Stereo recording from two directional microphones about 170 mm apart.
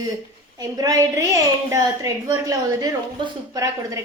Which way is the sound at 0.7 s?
20° right (ahead or behind).